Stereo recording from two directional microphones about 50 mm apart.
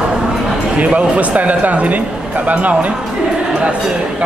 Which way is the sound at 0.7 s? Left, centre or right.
Right.